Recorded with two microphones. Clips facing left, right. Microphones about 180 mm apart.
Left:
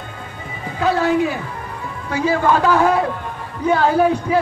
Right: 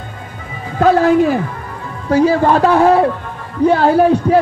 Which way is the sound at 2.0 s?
35° right (ahead or behind).